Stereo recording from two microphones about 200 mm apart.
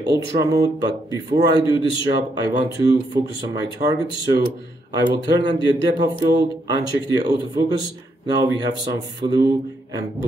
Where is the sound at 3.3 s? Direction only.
20° right (ahead or behind).